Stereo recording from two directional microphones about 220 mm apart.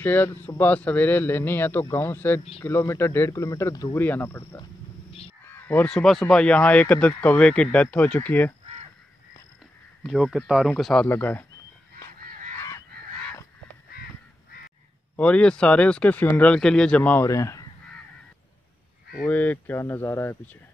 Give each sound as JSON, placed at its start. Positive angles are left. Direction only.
{"t": 0.0, "sound": "a man's voice", "side_deg": 10}
{"t": 10.0, "sound": "speech", "side_deg": 0}
{"t": 12.2, "sound": "a sound", "side_deg": -40}
{"t": 15.1, "sound": "a man's voice", "side_deg": 5}
{"t": 19.2, "sound": "a man's voice", "side_deg": 10}